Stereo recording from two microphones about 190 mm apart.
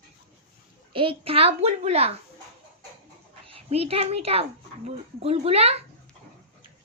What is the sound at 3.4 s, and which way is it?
A child's voice, 30° right (ahead or behind).